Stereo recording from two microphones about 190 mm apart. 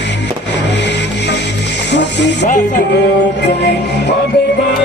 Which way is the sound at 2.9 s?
65° left (ahead or behind).